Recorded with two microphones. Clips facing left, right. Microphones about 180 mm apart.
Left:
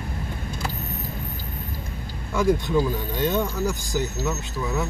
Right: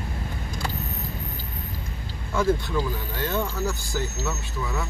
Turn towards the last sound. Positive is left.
turn(degrees=15)  # may be behind; listen again after turning